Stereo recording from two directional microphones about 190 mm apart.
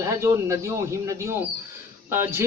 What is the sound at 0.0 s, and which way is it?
A man's voice, 15° right (ahead or behind).